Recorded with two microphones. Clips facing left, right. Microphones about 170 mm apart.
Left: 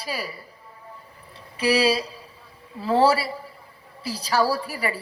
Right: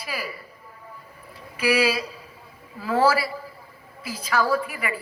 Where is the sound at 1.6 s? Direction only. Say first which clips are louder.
Left 1 dB; 30° left (ahead or behind).